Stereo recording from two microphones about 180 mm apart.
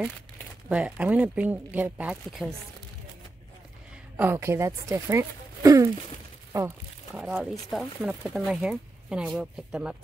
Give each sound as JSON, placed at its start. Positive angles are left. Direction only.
{"t": 0.7, "sound": "speech", "side_deg": -5}
{"t": 4.2, "sound": "speech", "side_deg": -15}
{"t": 7.2, "sound": "speech", "side_deg": -5}